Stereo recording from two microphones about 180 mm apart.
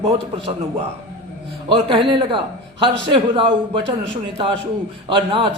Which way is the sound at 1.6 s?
25° right (ahead or behind).